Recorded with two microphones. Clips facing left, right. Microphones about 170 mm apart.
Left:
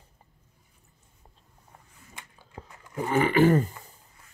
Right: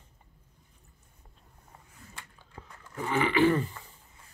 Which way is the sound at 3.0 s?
45° left (ahead or behind).